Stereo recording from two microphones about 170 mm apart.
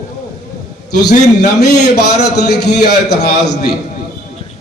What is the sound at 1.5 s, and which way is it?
A man's voice, 75° left (ahead or behind).